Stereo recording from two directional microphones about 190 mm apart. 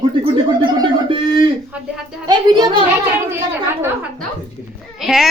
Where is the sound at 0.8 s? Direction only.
25° right (ahead or behind).